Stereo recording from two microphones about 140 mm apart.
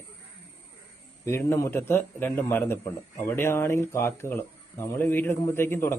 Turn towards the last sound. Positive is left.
turn(degrees=15)  # may be behind; listen again after turning